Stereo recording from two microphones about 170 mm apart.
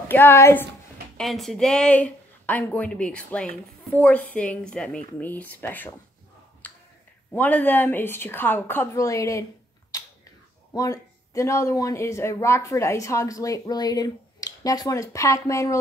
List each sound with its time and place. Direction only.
0.1 s speech: 15° left (ahead or behind)
1.1 s speech: centre (ahead or behind)
6.6 s finger snapping: 10° left (ahead or behind)
7.3 s speech: 10° left (ahead or behind)